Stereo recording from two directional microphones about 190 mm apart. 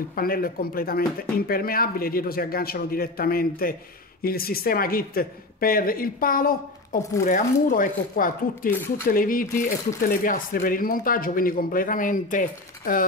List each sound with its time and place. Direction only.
0.1 s speech: 50° left (ahead or behind)
8.7 s speech: 10° left (ahead or behind)
9.1 s speech: 45° left (ahead or behind)